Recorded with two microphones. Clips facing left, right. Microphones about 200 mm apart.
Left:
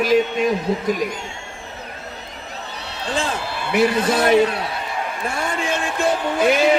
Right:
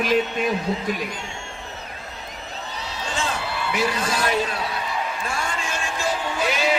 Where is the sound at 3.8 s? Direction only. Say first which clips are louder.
Left 8 dB; 60° left (ahead or behind).